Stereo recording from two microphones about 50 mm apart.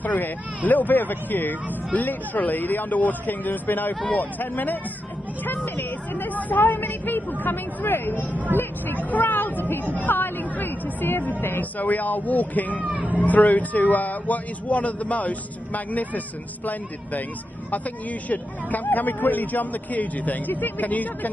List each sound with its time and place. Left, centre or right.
0.0 s speech: left
12.8 s speech: right
13.2 s speech: left
18.3 s speech: left